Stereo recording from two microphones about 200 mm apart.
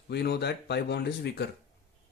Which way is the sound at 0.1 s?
55° left (ahead or behind).